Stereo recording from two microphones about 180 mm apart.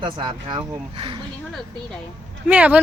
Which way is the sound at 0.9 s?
30° right (ahead or behind).